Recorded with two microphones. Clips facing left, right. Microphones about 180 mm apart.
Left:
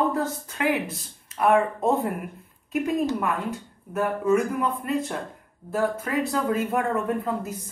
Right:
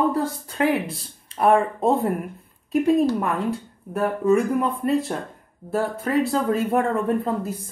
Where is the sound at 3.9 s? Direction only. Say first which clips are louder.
Right 3 dB; 35° right (ahead or behind).